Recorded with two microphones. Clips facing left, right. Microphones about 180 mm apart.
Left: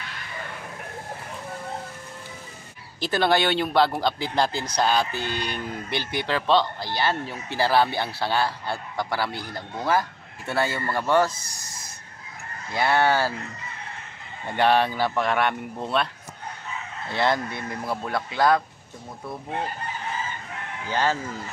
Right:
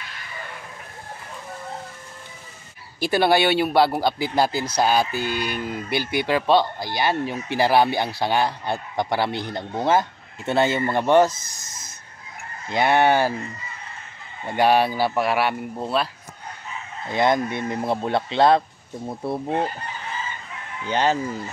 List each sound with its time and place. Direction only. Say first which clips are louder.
3.0 s speech: right 3 dB; 10° right (ahead or behind)
14.5 s speech: right 2 dB; 10° right (ahead or behind)
17.1 s speech: right 4 dB; 20° right (ahead or behind); by 19.6 s 35° right (ahead or behind)
20.8 s speech: right 4 dB; 20° right (ahead or behind)